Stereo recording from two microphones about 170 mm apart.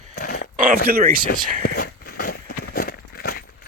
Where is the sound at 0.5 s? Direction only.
50° right (ahead or behind).